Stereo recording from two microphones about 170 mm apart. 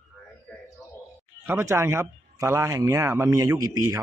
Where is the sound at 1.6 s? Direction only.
15° right (ahead or behind).